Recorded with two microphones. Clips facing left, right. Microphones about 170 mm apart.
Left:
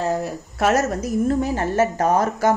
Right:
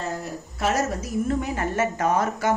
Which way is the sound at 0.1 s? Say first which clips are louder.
Left 7 dB; 75° left (ahead or behind).